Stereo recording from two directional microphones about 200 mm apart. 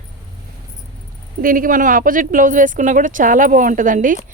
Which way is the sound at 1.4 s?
45° right (ahead or behind).